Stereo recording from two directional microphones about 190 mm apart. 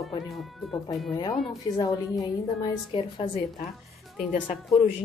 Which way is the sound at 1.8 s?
20° left (ahead or behind).